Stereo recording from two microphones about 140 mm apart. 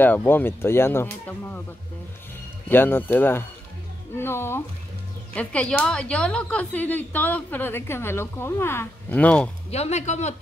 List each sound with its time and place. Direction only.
0.0 s speech: 15° left (ahead or behind)
2.7 s speech: 15° left (ahead or behind)
9.7 s speech: 50° left (ahead or behind)